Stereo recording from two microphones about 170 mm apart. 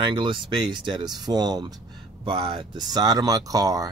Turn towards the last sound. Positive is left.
turn(degrees=-20)  # may be behind; listen again after turning